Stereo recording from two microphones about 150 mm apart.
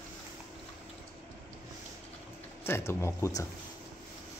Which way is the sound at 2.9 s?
20° left (ahead or behind).